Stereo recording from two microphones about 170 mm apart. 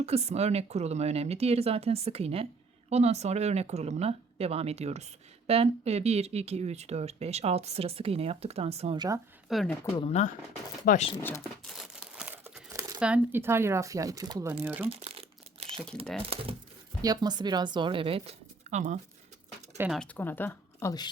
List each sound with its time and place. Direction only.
0.0 s speech: 40° right (ahead or behind)
9.0 s speech: 20° right (ahead or behind)
9.5 s speech: centre (ahead or behind)
10.0 s speech: 40° left (ahead or behind)
11.2 s speech: 15° left (ahead or behind)
11.6 s crumpling: centre (ahead or behind)
13.0 s speech: 10° right (ahead or behind)
14.8 s speech: 35° right (ahead or behind)
19.9 s speech: 5° left (ahead or behind)